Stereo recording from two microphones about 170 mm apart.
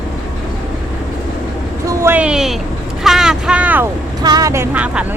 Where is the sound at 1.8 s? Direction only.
15° right (ahead or behind).